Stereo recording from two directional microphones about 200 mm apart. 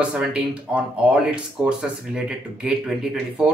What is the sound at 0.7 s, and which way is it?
Speech, 5° right (ahead or behind).